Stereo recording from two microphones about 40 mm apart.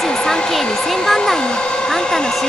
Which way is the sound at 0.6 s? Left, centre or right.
Centre.